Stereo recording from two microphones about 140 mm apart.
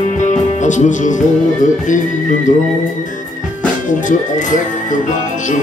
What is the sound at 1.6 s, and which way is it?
Speech, 65° left (ahead or behind).